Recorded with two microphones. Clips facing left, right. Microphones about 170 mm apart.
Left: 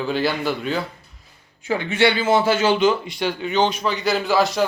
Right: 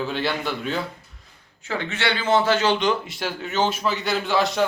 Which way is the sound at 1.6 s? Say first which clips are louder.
Left 7 dB; 10° left (ahead or behind).